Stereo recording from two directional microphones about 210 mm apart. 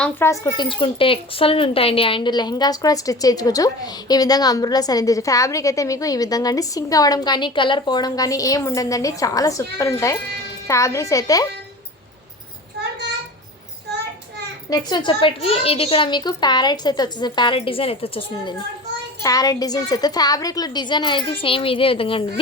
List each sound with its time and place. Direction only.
0.0 s speech: 10° left (ahead or behind)
14.7 s a child's voice: 20° left (ahead or behind)